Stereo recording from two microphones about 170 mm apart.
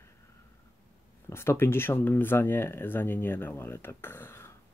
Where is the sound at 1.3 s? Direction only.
15° left (ahead or behind).